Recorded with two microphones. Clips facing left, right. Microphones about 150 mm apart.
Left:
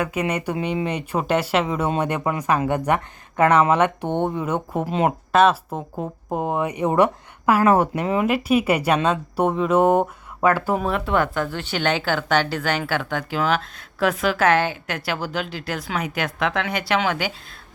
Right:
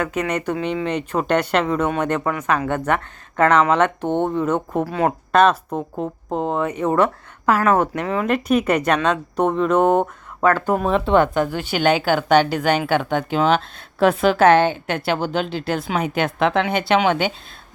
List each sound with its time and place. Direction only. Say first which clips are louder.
0.0 s speech: right 1 dB; 10° left (ahead or behind)
5.3 s speech: right 1 dB; 5° left (ahead or behind)
10.8 s speech: right 8 dB; 25° right (ahead or behind)